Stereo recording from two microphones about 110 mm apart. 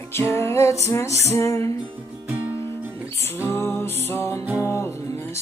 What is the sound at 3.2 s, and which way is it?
Music, 20° left (ahead or behind).